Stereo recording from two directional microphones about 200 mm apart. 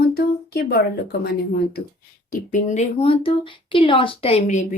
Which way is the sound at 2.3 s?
40° left (ahead or behind).